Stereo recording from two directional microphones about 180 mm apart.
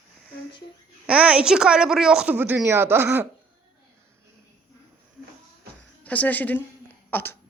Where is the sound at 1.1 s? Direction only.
5° right (ahead or behind).